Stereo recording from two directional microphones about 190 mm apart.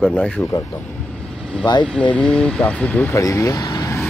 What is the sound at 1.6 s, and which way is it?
Speech, 25° left (ahead or behind).